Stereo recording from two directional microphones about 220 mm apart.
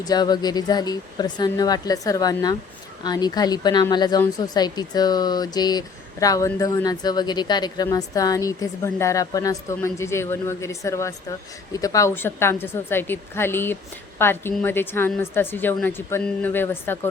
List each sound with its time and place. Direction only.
0.0 s speech: 20° left (ahead or behind)